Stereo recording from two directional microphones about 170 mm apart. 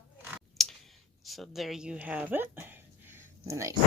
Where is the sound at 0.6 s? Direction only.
Centre (ahead or behind).